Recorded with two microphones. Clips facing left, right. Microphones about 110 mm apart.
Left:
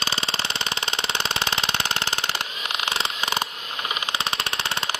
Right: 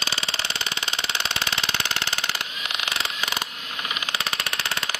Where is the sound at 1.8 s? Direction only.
35° left (ahead or behind).